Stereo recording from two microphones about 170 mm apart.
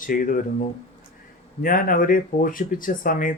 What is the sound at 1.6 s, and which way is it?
Speech, 55° left (ahead or behind).